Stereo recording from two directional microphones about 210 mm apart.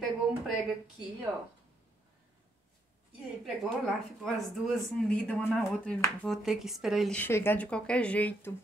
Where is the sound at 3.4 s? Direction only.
Centre (ahead or behind).